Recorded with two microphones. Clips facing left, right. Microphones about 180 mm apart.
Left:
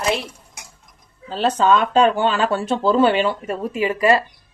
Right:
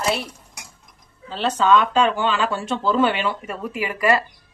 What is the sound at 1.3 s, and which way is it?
A woman's voice, 40° left (ahead or behind).